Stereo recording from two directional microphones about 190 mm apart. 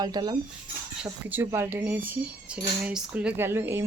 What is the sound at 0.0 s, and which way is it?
Speech, 20° right (ahead or behind).